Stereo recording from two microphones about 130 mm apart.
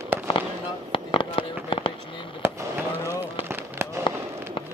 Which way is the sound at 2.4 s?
20° right (ahead or behind).